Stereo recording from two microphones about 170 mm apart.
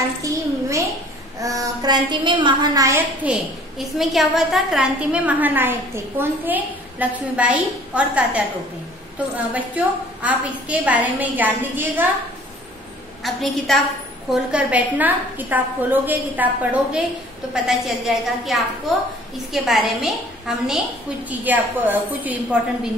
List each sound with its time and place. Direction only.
0.2 s a sound: 20° right (ahead or behind)
1.4 s a woman's voice: 20° right (ahead or behind)
3.3 s a woman's voice: centre (ahead or behind)
9.5 s a woman's voice: 10° right (ahead or behind)
13.2 s a woman's voice: centre (ahead or behind)
17.6 s a woman's voice: centre (ahead or behind)